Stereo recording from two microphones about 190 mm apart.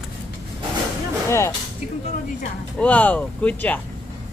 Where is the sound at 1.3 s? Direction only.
15° left (ahead or behind).